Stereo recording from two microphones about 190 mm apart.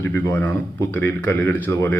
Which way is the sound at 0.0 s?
10° left (ahead or behind).